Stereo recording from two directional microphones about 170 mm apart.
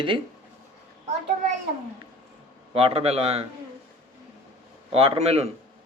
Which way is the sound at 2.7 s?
35° right (ahead or behind).